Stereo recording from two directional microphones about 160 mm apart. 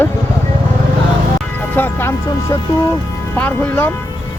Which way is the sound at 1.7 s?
15° left (ahead or behind).